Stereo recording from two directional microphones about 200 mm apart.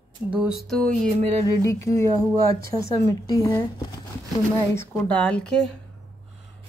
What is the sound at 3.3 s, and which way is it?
Speech, 15° left (ahead or behind).